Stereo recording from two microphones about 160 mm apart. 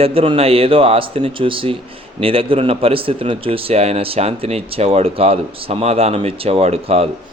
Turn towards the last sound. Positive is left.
turn(degrees=-40)  # may be behind; listen again after turning